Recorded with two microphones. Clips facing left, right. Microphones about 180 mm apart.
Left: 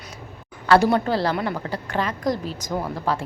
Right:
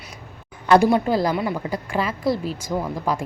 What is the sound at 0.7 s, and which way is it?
Speech, 15° right (ahead or behind).